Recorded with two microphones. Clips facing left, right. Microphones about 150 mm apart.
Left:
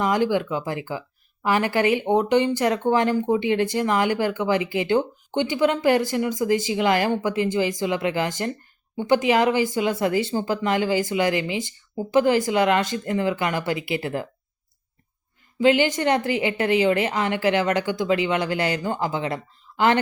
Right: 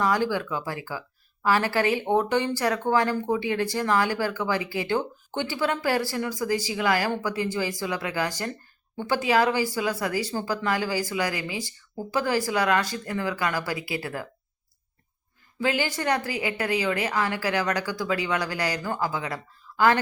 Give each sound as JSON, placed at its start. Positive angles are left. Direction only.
{"t": 0.0, "sound": "speech", "side_deg": 20}
{"t": 15.5, "sound": "speech", "side_deg": 20}